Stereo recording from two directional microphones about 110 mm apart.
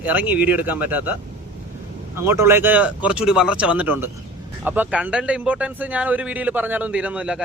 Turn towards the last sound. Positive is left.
turn(degrees=-10)  # may be behind; listen again after turning